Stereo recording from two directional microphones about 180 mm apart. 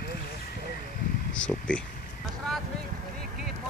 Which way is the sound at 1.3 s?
5° left (ahead or behind).